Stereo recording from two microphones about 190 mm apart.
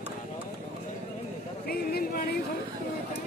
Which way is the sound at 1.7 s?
55° left (ahead or behind).